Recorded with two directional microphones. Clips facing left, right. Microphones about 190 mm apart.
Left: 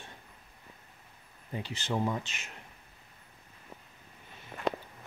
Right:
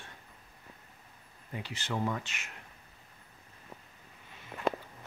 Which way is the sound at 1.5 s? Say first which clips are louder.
Left 3 dB; 25° left (ahead or behind).